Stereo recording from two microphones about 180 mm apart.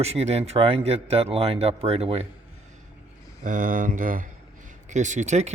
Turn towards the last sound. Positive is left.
turn(degrees=-40)  # may be behind; listen again after turning